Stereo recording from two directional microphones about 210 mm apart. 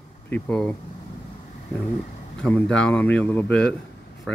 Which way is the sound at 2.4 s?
5° left (ahead or behind).